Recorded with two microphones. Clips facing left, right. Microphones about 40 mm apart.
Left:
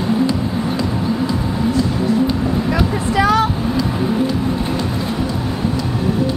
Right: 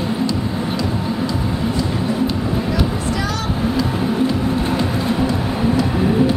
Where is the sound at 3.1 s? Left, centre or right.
Left.